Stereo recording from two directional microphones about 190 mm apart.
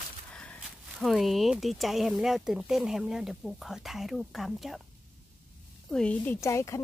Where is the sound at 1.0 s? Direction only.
Centre (ahead or behind).